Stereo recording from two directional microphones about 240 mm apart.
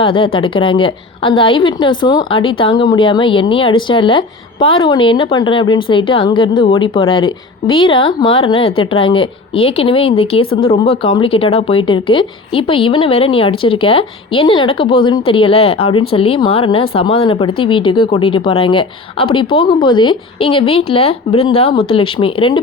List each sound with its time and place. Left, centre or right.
0.0 s speech: left